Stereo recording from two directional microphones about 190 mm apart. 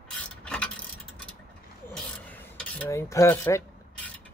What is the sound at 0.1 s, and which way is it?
Mechanisms, 5° left (ahead or behind).